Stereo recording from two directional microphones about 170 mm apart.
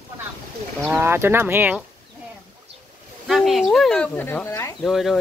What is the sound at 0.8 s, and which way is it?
Speech, 15° right (ahead or behind).